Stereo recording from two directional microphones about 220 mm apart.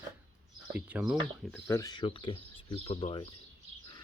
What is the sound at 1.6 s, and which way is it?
Speech, 15° left (ahead or behind).